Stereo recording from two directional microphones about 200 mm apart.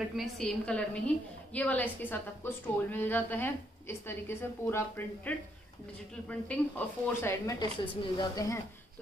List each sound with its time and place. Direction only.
0.1 s a woman's voice: centre (ahead or behind)
7.6 s speech: 25° left (ahead or behind)